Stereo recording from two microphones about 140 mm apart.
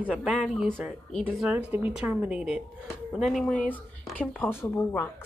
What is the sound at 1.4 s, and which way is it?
A woman's voice, 10° right (ahead or behind).